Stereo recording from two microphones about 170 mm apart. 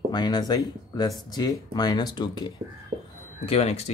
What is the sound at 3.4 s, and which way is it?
Speech, 35° left (ahead or behind).